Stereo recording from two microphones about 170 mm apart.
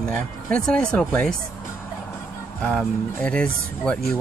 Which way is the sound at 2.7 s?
5° left (ahead or behind).